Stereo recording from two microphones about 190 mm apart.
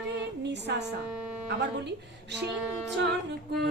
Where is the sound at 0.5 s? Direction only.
65° right (ahead or behind).